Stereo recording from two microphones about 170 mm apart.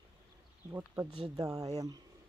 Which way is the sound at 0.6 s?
15° right (ahead or behind).